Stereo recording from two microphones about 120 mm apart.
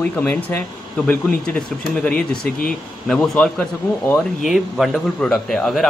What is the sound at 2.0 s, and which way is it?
A man's voice, 10° left (ahead or behind).